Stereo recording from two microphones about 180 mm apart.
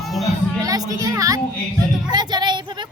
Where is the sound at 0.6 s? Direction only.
20° right (ahead or behind).